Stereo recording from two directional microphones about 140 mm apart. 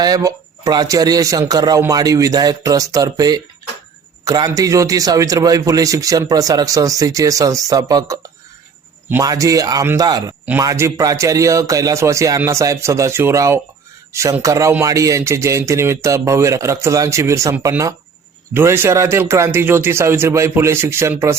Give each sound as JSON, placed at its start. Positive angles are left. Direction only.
{"t": 0.0, "sound": "a man's voice", "side_deg": -25}
{"t": 9.2, "sound": "a man's voice", "side_deg": -25}